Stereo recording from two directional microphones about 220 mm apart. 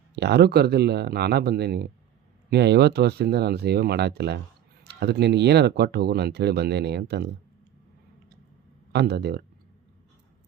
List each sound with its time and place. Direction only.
0.2 s speech: 50° right (ahead or behind)
8.9 s speech: 50° right (ahead or behind)